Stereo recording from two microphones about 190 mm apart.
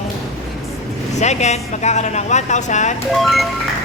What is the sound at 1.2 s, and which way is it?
Speech, 35° left (ahead or behind).